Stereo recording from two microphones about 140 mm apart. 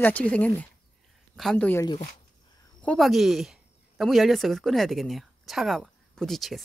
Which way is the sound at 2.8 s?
5° left (ahead or behind).